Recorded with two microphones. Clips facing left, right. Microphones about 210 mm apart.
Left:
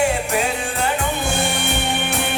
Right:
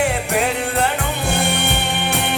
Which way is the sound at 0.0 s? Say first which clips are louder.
Even; 60° right (ahead or behind).